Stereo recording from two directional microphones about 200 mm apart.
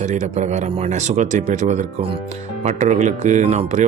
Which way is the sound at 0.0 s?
35° right (ahead or behind).